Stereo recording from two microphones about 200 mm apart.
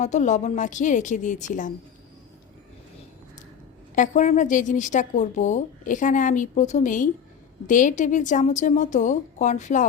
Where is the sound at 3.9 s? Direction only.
40° left (ahead or behind).